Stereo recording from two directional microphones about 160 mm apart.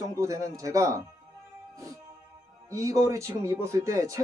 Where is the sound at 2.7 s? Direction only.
20° right (ahead or behind).